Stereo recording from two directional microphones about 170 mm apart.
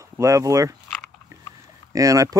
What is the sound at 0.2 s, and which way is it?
Speech, 20° right (ahead or behind).